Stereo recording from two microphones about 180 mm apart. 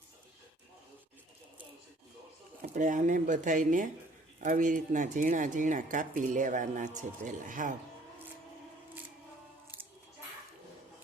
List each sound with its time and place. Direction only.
2.6 s speech: 45° right (ahead or behind)